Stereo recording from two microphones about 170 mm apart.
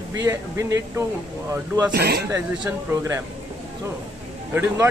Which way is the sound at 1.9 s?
70° right (ahead or behind).